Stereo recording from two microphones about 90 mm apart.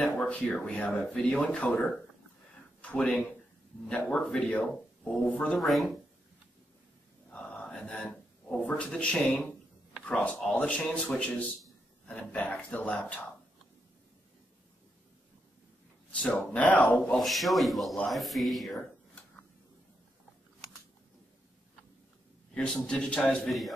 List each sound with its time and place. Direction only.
0.0 s speech: 20° left (ahead or behind)
1.0 s a man's voice: 5° left (ahead or behind)
5.6 s a man's voice: centre (ahead or behind)
7.2 s a sound: 15° left (ahead or behind)
10.0 s speech: 15° left (ahead or behind)
16.1 s speech: 15° left (ahead or behind)
17.2 s a man's voice: centre (ahead or behind)
22.5 s speech: 10° left (ahead or behind)